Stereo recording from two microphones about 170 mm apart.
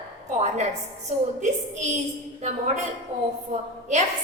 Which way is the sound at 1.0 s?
45° right (ahead or behind).